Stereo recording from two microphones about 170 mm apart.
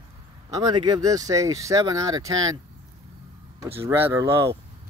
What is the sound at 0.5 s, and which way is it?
Speech, 25° right (ahead or behind).